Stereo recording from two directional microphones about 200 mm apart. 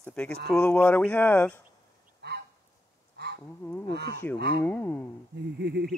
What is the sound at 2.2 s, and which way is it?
Goose, 55° right (ahead or behind).